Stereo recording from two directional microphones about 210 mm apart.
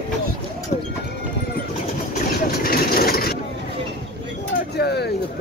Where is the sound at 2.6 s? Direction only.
45° left (ahead or behind).